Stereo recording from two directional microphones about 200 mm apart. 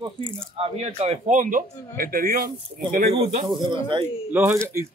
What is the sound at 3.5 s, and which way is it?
Speech, 25° right (ahead or behind).